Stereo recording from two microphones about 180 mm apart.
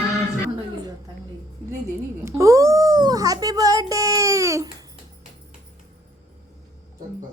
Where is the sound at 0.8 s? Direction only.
20° right (ahead or behind).